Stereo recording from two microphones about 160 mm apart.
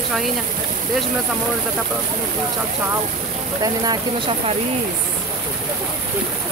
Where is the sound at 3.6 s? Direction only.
25° right (ahead or behind).